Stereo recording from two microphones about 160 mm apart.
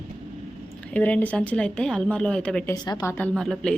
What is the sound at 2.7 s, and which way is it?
Speech, 20° left (ahead or behind).